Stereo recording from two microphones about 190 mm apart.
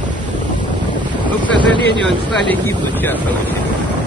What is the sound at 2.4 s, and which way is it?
Speech, 10° left (ahead or behind).